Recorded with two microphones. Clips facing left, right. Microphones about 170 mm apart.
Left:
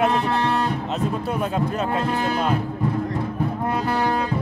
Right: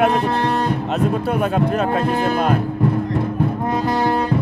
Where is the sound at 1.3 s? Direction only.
60° right (ahead or behind).